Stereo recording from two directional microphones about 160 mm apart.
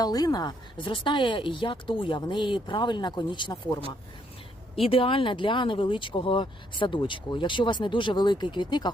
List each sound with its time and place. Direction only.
0.0 s speech: 25° left (ahead or behind)
4.8 s speech: 35° left (ahead or behind)